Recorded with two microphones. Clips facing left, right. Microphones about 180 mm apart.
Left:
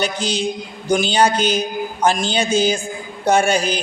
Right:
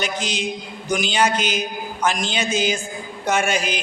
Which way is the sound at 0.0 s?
30° left (ahead or behind).